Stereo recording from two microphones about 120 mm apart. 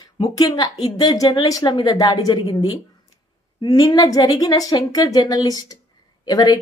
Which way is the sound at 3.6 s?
30° left (ahead or behind).